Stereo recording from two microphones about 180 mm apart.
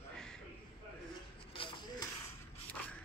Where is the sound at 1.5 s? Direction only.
25° left (ahead or behind).